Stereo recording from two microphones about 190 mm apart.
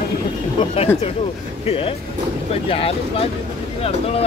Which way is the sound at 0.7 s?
35° left (ahead or behind).